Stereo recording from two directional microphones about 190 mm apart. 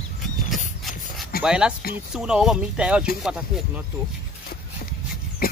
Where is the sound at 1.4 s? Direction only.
5° right (ahead or behind).